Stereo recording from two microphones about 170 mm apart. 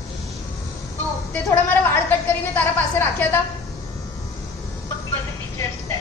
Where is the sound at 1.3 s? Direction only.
15° left (ahead or behind).